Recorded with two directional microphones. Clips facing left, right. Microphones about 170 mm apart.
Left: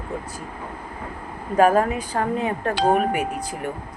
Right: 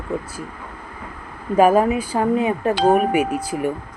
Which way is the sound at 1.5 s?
10° right (ahead or behind).